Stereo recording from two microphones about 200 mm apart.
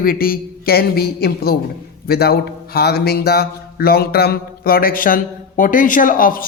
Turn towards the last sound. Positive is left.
turn(degrees=45)  # may be behind; listen again after turning